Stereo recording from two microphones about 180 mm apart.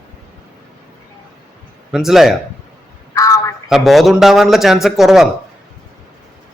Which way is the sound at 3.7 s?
Centre (ahead or behind).